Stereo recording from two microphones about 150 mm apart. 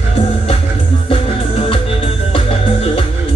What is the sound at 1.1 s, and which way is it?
Music, 40° left (ahead or behind).